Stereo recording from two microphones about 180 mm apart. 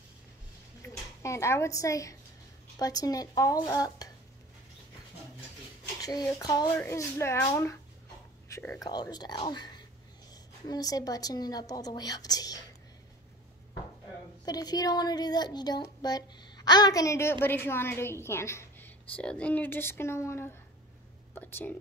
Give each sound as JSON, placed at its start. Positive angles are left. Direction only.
{"t": 0.8, "sound": "a woman's voice", "side_deg": 15}
{"t": 5.9, "sound": "a woman's voice", "side_deg": 20}
{"t": 14.4, "sound": "a woman's voice", "side_deg": 20}